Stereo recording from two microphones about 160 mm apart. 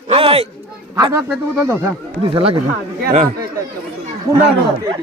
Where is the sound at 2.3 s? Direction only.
35° right (ahead or behind).